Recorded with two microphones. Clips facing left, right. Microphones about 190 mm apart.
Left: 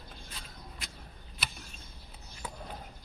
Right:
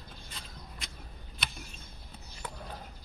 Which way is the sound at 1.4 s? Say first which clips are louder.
Even; centre (ahead or behind).